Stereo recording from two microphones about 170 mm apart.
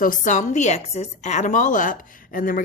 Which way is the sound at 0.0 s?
50° left (ahead or behind).